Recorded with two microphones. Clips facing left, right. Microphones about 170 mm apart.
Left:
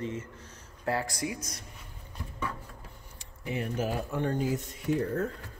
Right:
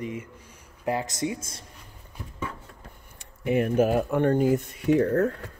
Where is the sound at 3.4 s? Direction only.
60° right (ahead or behind).